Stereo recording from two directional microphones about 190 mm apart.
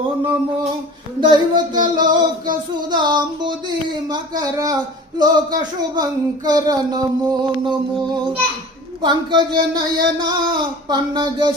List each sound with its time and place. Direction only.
1.2 s speech: 25° right (ahead or behind)
9.0 s speech: 25° right (ahead or behind)